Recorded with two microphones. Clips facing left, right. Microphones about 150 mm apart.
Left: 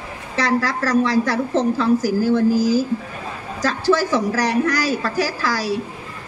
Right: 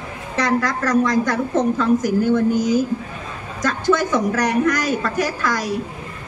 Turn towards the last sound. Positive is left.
turn(degrees=35)  # may be behind; listen again after turning